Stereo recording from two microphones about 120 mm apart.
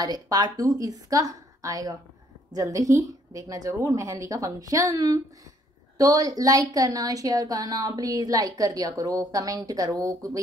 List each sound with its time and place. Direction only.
0.0 s a woman's voice: 35° right (ahead or behind)